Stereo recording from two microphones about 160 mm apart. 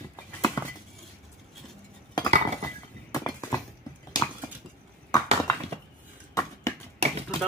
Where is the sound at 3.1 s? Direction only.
20° left (ahead or behind).